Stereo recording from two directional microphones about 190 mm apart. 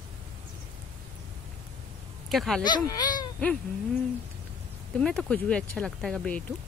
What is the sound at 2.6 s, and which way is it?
Speech, 20° left (ahead or behind).